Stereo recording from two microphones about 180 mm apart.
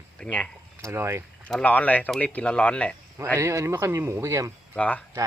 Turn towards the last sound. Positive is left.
turn(degrees=5)  # may be behind; listen again after turning